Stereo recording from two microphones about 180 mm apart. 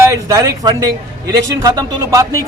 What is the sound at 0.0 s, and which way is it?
A man's voice, 15° right (ahead or behind).